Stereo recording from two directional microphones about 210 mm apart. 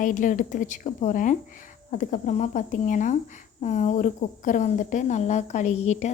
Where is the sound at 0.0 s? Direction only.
40° left (ahead or behind).